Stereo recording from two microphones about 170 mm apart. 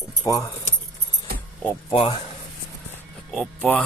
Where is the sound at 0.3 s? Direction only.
20° left (ahead or behind).